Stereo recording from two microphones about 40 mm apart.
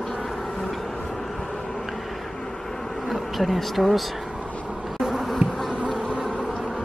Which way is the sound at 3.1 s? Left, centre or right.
Centre.